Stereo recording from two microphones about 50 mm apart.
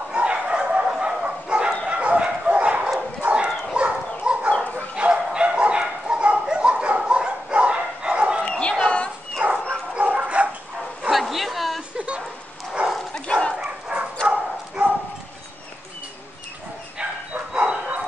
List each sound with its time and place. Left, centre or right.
0.1 s bow-wow: right
3.4 s dog: centre
7.1 s bow-wow: right
8.5 s bow-wow: centre
9.9 s bow-wow: right
11.1 s bow-wow: centre
12.8 s bow-wow: right
13.1 s dog: left
13.6 s dog: centre
14.2 s dog: right
17.3 s bow-wow: right